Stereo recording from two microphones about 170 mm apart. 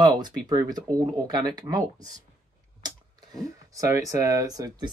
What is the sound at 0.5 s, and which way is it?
Speech, 25° right (ahead or behind).